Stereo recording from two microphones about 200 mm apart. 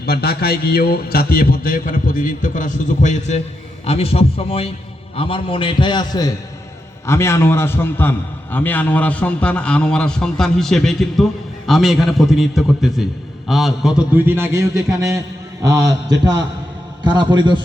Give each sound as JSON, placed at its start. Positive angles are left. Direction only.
{"t": 0.0, "sound": "a man's voice", "side_deg": 50}